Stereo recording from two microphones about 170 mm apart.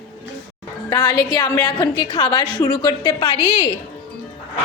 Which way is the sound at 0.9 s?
25° left (ahead or behind).